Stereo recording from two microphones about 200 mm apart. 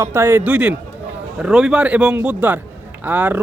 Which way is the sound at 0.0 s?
15° right (ahead or behind).